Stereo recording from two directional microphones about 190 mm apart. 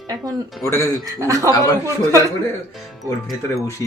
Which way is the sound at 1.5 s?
20° left (ahead or behind).